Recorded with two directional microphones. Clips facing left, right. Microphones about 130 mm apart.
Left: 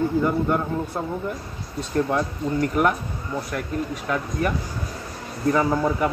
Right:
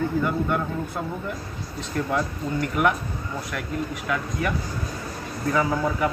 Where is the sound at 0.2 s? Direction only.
30° left (ahead or behind).